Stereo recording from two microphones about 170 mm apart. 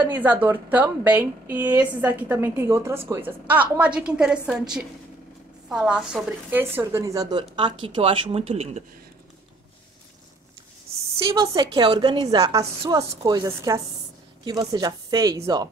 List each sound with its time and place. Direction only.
0.2 s a woman's voice: 10° right (ahead or behind); by 8.8 s 35° right (ahead or behind)
11.7 s speech: 30° right (ahead or behind)